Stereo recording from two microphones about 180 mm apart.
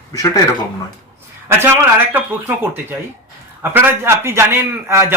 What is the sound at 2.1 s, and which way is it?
Speech, 10° right (ahead or behind).